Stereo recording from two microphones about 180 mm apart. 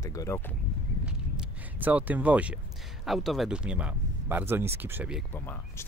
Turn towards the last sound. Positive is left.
turn(degrees=10)  # may be behind; listen again after turning